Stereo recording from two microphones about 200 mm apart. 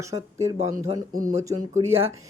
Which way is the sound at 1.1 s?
40° right (ahead or behind).